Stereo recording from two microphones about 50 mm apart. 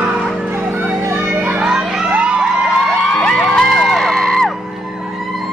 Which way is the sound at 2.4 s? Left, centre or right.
Centre.